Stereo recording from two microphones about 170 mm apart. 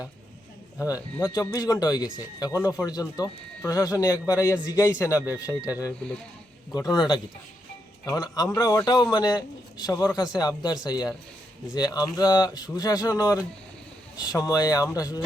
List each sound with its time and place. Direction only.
0.8 s speech: 20° left (ahead or behind)
6.7 s speech: 25° left (ahead or behind)